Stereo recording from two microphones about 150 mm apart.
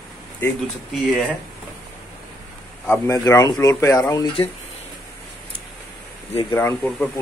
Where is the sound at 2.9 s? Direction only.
20° left (ahead or behind).